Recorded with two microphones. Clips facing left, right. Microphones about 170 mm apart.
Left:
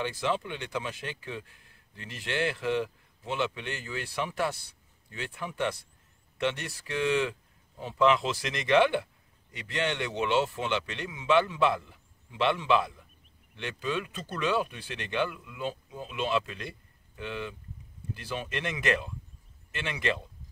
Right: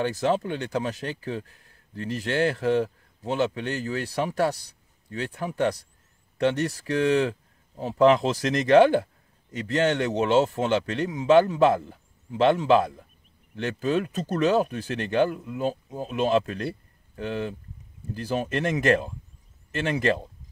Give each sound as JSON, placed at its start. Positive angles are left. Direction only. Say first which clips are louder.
{"t": 0.0, "sound": "speech", "louder": "right 6 dB", "side_deg": -40}